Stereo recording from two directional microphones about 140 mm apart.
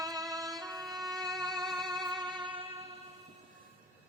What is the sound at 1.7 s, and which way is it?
Music, 30° right (ahead or behind).